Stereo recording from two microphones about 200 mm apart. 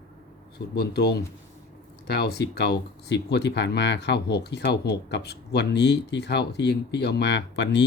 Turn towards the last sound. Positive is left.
turn(degrees=60)  # may be behind; listen again after turning